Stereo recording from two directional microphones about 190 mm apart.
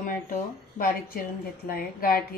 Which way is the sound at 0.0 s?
45° left (ahead or behind).